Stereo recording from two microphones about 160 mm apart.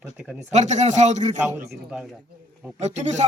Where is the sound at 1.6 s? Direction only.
85° right.